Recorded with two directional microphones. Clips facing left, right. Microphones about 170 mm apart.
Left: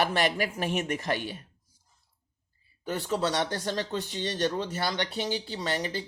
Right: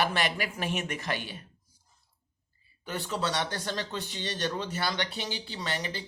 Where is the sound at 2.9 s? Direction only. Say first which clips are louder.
Left 4 dB; 45° left (ahead or behind).